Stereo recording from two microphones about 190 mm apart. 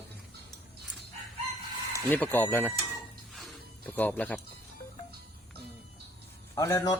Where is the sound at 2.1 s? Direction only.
10° left (ahead or behind).